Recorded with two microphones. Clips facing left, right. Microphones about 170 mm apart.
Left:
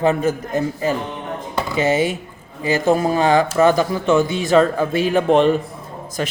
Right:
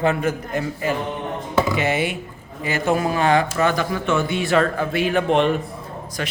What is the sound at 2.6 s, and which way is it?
A man's voice, 35° left (ahead or behind).